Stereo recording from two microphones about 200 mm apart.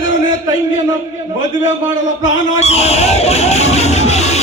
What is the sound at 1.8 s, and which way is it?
Speech, 70° left (ahead or behind).